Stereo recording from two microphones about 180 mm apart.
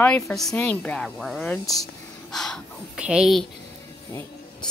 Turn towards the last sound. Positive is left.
turn(degrees=10)  # may be behind; listen again after turning